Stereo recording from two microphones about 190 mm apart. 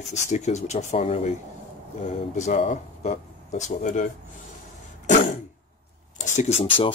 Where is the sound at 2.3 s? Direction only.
40° left (ahead or behind).